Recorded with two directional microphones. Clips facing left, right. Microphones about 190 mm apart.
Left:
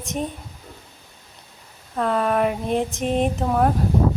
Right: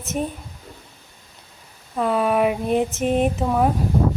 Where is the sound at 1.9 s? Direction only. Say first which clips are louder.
Right 1 dB; 5° right (ahead or behind).